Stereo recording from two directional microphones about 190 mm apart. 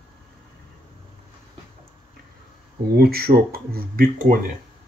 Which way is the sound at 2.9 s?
55° right (ahead or behind).